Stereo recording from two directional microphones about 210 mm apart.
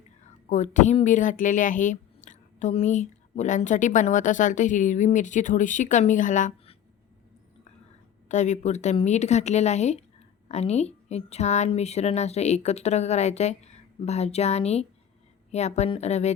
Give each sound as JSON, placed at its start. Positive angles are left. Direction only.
{"t": 0.5, "sound": "speech", "side_deg": 35}
{"t": 8.3, "sound": "speech", "side_deg": 35}